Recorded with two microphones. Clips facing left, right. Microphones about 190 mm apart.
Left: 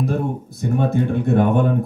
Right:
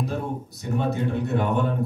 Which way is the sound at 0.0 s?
50° left (ahead or behind).